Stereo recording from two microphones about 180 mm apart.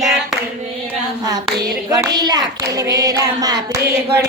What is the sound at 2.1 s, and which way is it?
Child singing, 25° right (ahead or behind).